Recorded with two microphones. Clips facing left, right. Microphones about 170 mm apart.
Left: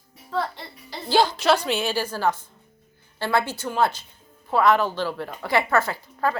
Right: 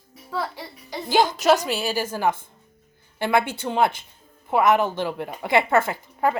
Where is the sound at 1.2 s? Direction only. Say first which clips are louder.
Right 2 dB; 45° right (ahead or behind).